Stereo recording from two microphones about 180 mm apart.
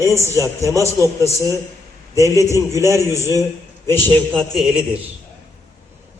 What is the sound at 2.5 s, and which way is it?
Speech, 15° right (ahead or behind).